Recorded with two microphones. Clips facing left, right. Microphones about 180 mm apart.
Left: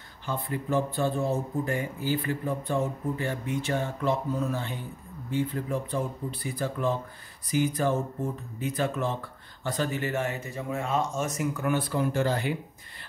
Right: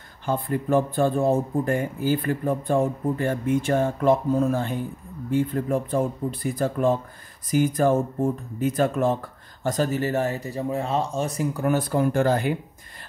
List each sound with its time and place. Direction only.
0.3 s speech: 50° right (ahead or behind)